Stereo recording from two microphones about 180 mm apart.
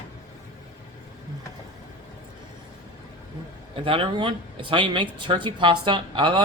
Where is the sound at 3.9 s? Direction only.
30° right (ahead or behind).